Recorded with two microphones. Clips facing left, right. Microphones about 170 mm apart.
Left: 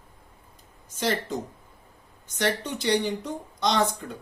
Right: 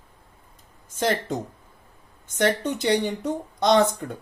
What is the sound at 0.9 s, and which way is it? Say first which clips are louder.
Speech: right 4 dB; 55° right (ahead or behind).